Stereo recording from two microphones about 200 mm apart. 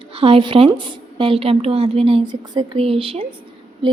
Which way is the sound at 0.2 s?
25° right (ahead or behind).